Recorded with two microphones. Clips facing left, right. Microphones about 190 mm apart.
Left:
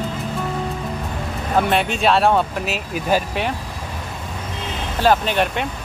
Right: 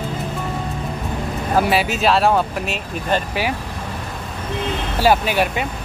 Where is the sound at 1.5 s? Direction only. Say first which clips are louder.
Right 1 dB; 5° right (ahead or behind).